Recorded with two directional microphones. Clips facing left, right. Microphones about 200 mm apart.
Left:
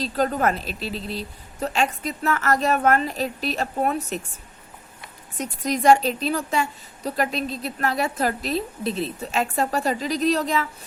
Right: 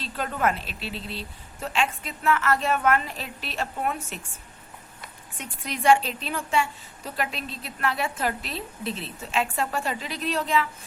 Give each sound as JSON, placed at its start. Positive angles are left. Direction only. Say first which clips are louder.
{"t": 0.0, "sound": "a woman's voice", "louder": "left 5 dB", "side_deg": 40}
{"t": 5.4, "sound": "a woman's voice", "louder": "left 7 dB", "side_deg": 40}